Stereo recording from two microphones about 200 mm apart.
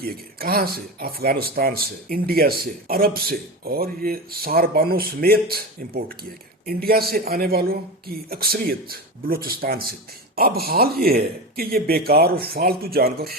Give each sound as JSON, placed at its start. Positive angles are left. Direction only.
{"t": 0.0, "sound": "speech", "side_deg": -50}